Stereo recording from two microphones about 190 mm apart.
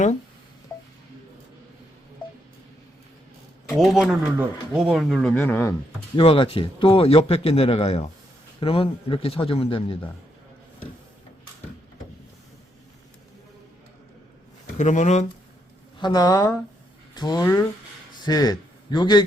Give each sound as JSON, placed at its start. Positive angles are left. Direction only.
{"t": 3.7, "sound": "speech", "side_deg": 0}
{"t": 6.1, "sound": "a man's voice", "side_deg": 30}
{"t": 14.8, "sound": "a man's voice", "side_deg": 40}
{"t": 16.0, "sound": "a man's voice", "side_deg": 20}